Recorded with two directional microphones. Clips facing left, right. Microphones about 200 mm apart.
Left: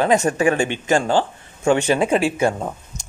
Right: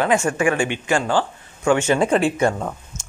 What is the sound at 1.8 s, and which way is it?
Speech, 10° left (ahead or behind).